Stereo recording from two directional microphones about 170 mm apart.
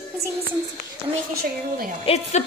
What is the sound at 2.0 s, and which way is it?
Speech, 40° left (ahead or behind).